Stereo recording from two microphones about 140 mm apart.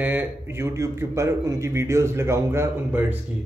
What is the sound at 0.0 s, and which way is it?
A man's voice, 15° right (ahead or behind).